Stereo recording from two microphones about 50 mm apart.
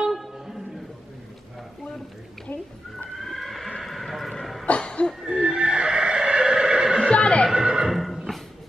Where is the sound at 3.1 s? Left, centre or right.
Centre.